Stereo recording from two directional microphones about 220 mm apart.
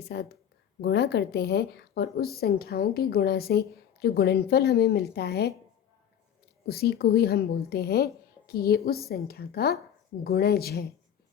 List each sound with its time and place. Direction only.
0.1 s a woman's voice: 50° left (ahead or behind)
6.7 s a woman's voice: 45° left (ahead or behind)